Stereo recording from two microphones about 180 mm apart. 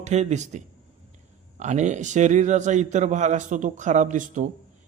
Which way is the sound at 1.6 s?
40° right (ahead or behind).